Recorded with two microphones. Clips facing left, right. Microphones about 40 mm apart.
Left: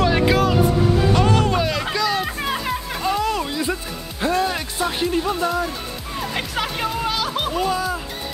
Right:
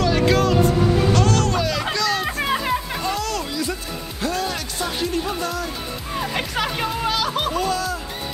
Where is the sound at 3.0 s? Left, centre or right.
Centre.